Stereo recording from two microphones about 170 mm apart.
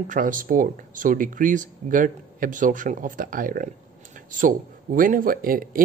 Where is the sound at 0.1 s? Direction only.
50° right (ahead or behind).